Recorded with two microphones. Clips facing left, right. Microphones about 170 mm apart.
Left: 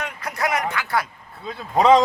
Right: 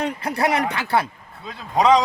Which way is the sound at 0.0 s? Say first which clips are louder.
Right 4 dB; 30° right (ahead or behind).